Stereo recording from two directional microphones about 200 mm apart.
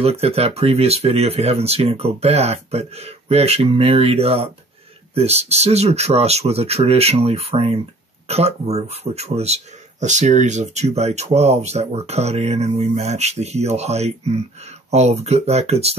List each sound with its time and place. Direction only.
0.0 s speech: 30° right (ahead or behind)